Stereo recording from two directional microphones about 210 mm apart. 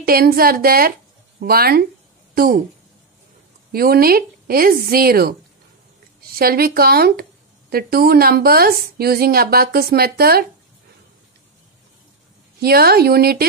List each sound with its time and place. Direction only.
0.0 s speech: 45° right (ahead or behind)
3.7 s speech: 45° right (ahead or behind)
6.3 s speech: 45° right (ahead or behind)
12.5 s speech: 45° right (ahead or behind)